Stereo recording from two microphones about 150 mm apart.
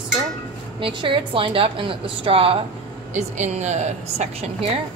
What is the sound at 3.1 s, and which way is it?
Speech, 50° right (ahead or behind).